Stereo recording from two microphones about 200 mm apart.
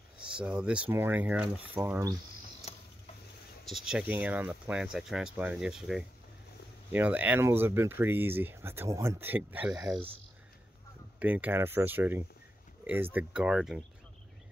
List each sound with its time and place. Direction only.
0.2 s speech: 5° right (ahead or behind)
3.6 s speech: centre (ahead or behind)
11.1 s speech: 10° right (ahead or behind)